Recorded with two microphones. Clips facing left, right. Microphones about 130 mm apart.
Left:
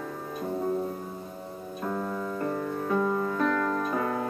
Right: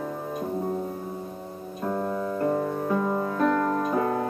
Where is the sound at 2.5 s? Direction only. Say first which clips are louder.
Right 2 dB; 25° right (ahead or behind).